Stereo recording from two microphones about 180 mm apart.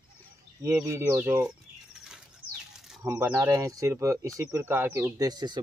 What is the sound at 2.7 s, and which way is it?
Bird, centre (ahead or behind).